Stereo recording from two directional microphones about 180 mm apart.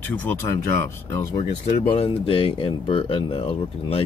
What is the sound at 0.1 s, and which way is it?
Speech, 10° left (ahead or behind).